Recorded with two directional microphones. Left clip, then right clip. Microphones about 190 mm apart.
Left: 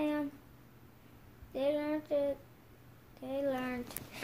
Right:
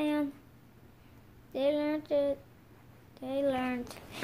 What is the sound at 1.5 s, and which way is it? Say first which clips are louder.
A woman's voice: right 3 dB; 30° right (ahead or behind).